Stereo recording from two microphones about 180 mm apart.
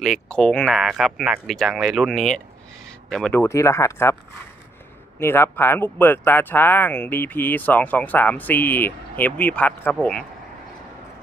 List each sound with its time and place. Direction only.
0.0 s speech: 5° left (ahead or behind)
3.3 s speech: 15° left (ahead or behind)
5.2 s speech: 15° left (ahead or behind)